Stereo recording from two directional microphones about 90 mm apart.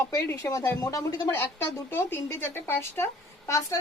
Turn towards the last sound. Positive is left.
turn(degrees=35)  # may be behind; listen again after turning